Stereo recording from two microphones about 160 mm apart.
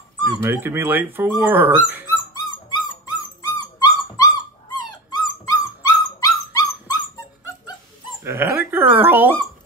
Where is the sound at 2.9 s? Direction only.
25° left (ahead or behind).